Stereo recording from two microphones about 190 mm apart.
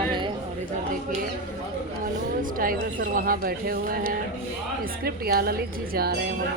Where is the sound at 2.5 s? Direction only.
50° right (ahead or behind).